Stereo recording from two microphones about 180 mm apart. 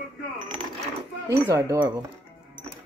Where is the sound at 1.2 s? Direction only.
15° right (ahead or behind).